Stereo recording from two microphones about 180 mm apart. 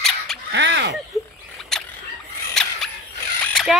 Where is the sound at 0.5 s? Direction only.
75° right (ahead or behind).